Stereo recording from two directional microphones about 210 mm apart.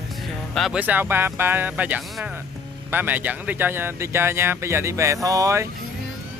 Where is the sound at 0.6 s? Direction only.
5° right (ahead or behind).